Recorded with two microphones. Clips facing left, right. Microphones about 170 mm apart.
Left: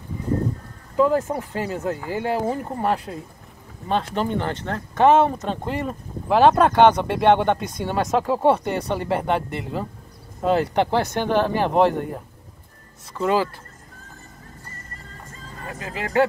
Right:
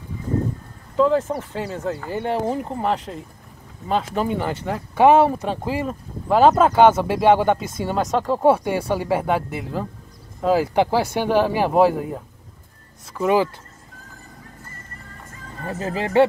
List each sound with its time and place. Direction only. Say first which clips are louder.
0.9 s speech: right 1 dB; 10° left (ahead or behind)
8.5 s speech: right 5 dB; 5° right (ahead or behind)
13.1 s speech: right 2 dB; 15° right (ahead or behind)
15.6 s speech: right 6 dB; 35° right (ahead or behind)